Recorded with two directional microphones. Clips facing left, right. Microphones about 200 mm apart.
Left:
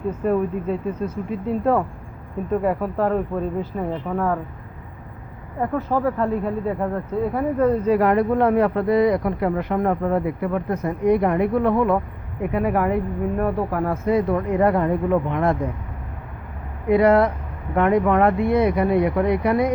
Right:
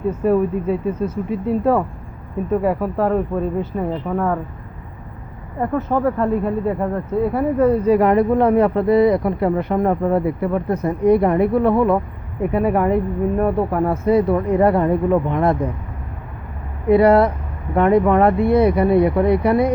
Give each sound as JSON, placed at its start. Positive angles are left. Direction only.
{"t": 0.3, "sound": "speech", "side_deg": -5}
{"t": 5.5, "sound": "speech", "side_deg": 0}
{"t": 16.9, "sound": "speech", "side_deg": -35}